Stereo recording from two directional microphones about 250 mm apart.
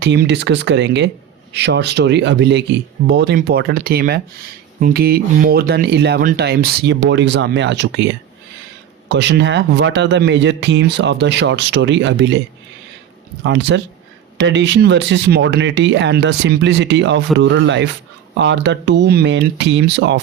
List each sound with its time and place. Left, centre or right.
0.0 s speech: right
13.4 s speech: right